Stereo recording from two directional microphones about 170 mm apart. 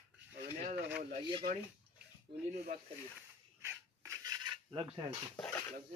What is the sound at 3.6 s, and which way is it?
Cutlery, 20° right (ahead or behind).